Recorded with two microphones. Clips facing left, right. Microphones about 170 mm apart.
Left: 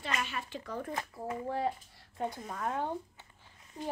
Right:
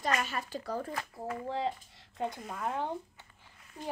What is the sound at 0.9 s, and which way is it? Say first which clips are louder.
Speech: even; 20° left (ahead or behind).